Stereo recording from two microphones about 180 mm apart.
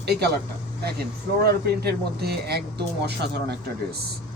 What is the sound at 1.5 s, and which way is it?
Speech, 60° right (ahead or behind).